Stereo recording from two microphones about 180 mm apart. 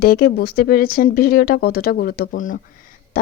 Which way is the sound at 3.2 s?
50° left (ahead or behind).